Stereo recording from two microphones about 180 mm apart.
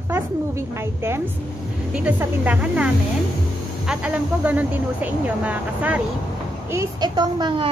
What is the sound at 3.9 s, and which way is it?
A woman's voice, 5° right (ahead or behind).